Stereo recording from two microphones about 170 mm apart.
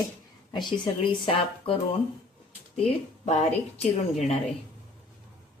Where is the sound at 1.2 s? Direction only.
35° left (ahead or behind).